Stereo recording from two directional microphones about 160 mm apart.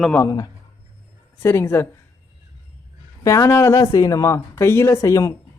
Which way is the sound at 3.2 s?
20° left (ahead or behind).